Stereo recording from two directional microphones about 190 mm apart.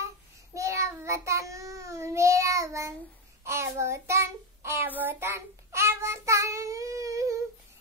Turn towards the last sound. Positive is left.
turn(degrees=-15)  # may be behind; listen again after turning